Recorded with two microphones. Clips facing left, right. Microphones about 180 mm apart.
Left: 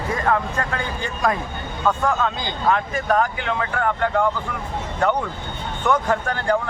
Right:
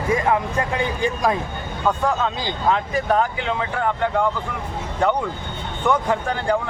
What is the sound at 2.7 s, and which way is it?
Speech, 20° right (ahead or behind).